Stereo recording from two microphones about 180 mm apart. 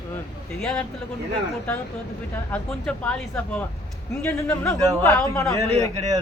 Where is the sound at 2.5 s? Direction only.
10° left (ahead or behind).